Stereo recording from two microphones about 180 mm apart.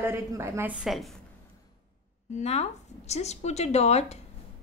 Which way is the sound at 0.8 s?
Centre (ahead or behind).